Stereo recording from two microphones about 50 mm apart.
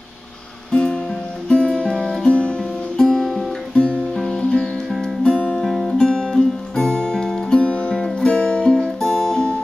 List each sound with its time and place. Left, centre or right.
0.7 s music: centre
3.7 s music: left
4.1 s music: centre
5.6 s music: centre
8.7 s music: centre